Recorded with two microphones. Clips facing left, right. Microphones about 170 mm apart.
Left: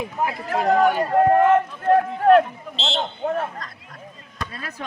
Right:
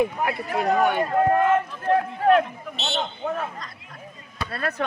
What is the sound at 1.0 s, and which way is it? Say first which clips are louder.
Speech: left 3 dB; 45° left (ahead or behind).